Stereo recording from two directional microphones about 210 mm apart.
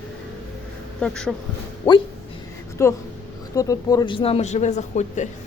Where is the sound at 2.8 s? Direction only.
15° left (ahead or behind); by 5.3 s 35° left (ahead or behind).